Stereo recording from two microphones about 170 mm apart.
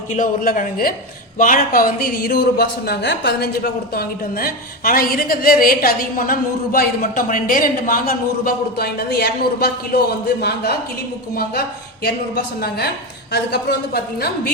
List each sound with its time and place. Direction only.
0.1 s speech: 50° left (ahead or behind); by 10.8 s 70° left (ahead or behind)
12.5 s speech: 70° left (ahead or behind)